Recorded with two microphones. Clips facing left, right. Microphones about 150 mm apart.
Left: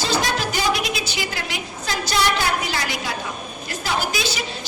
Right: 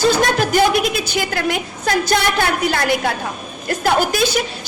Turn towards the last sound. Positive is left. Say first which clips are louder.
# right 7 dB
turn(degrees=-50)  # may be behind; listen again after turning